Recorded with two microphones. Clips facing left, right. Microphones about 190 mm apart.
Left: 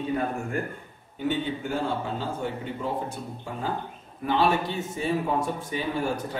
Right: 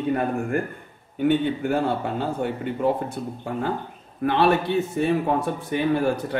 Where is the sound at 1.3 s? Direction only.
60° right (ahead or behind).